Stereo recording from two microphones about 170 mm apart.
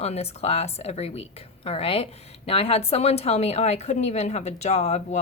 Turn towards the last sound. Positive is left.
turn(degrees=40)  # may be behind; listen again after turning